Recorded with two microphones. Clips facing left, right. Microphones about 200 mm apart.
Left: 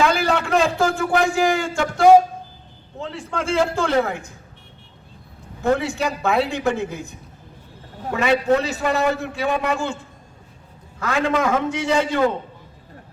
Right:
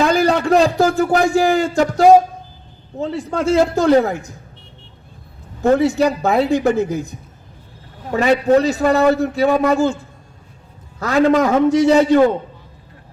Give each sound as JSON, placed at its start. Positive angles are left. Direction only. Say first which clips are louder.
{"t": 0.0, "sound": "a man's voice", "louder": "right 4 dB", "side_deg": -40}
{"t": 5.7, "sound": "a man's voice", "louder": "right 11 dB", "side_deg": -40}
{"t": 11.0, "sound": "a man's voice", "louder": "right 7 dB", "side_deg": -40}